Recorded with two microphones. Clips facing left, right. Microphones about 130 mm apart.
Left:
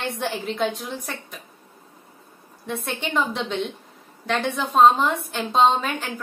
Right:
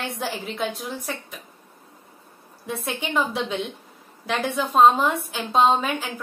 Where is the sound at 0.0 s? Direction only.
Centre (ahead or behind).